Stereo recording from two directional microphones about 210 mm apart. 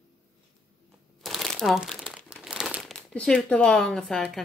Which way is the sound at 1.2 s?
Centre (ahead or behind).